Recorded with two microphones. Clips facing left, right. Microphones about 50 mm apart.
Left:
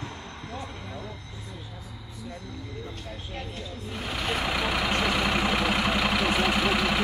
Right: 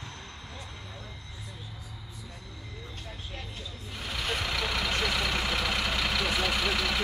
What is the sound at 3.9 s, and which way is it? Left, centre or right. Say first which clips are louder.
Vehicle: left 3 dB; centre.